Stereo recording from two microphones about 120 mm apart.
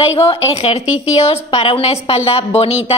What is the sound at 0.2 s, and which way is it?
A woman's voice, 55° left (ahead or behind).